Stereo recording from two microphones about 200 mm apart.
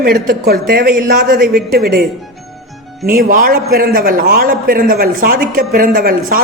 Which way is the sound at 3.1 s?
45° right (ahead or behind).